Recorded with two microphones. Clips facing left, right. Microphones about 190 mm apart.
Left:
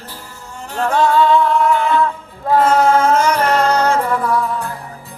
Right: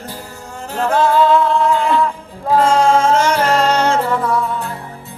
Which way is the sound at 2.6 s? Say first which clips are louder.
Even; 25° right (ahead or behind).